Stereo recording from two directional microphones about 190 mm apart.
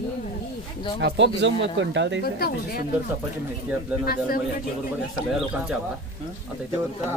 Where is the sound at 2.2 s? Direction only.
55° left (ahead or behind).